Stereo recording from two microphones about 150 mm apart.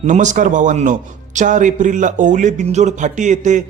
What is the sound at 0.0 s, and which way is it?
Speech, 55° right (ahead or behind).